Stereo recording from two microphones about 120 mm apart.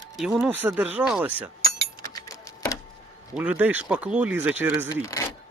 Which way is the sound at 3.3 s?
15° right (ahead or behind).